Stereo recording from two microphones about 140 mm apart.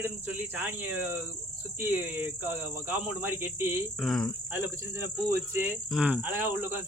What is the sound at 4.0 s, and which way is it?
Speech, centre (ahead or behind).